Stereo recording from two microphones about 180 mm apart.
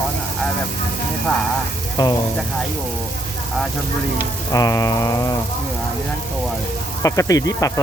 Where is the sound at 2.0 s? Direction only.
20° left (ahead or behind).